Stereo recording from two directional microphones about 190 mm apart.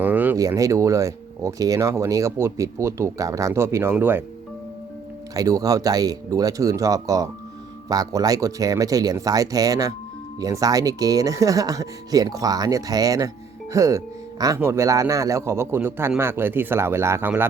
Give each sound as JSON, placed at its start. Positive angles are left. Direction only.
{"t": 0.0, "sound": "speech", "side_deg": -10}
{"t": 5.3, "sound": "speech", "side_deg": -20}